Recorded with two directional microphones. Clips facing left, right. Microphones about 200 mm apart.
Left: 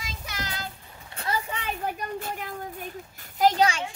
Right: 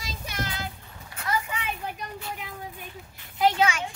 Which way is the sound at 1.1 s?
30° left (ahead or behind).